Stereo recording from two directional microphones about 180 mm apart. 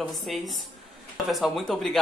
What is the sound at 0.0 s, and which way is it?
Speech, centre (ahead or behind).